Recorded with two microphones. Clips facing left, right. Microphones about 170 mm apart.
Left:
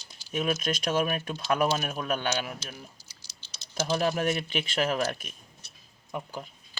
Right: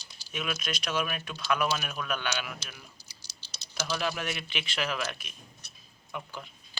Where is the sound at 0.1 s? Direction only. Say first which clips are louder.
Left 7 dB; 45° left (ahead or behind).